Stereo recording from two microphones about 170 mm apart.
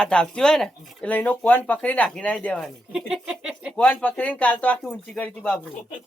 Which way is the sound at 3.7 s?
10° left (ahead or behind).